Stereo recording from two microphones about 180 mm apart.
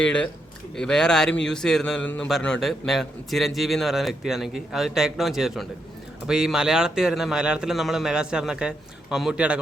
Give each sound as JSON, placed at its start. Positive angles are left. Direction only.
{"t": 0.0, "sound": "a man's voice", "side_deg": 5}